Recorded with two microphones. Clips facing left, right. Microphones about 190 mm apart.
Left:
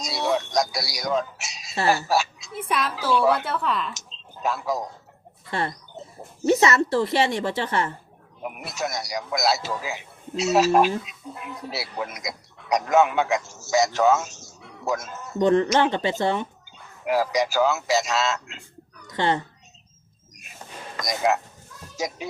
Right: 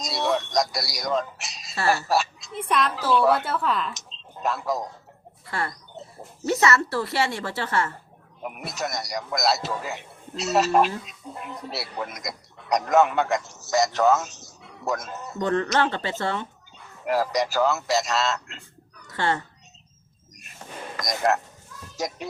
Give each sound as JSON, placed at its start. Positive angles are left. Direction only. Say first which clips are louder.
{"t": 0.0, "sound": "speech", "louder": "even", "side_deg": 0}
{"t": 5.5, "sound": "speech", "louder": "left 3 dB", "side_deg": 25}
{"t": 8.4, "sound": "speech", "louder": "left 1 dB", "side_deg": 0}
{"t": 15.4, "sound": "speech", "louder": "left 4 dB", "side_deg": 20}
{"t": 17.1, "sound": "speech", "louder": "left 1 dB", "side_deg": 0}
{"t": 19.0, "sound": "a sound", "louder": "left 2 dB", "side_deg": 20}
{"t": 20.3, "sound": "a sound", "louder": "left 2 dB", "side_deg": 0}
{"t": 21.0, "sound": "speech", "louder": "left 1 dB", "side_deg": 0}